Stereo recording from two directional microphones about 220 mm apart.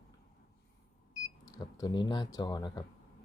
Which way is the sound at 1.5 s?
20° left (ahead or behind).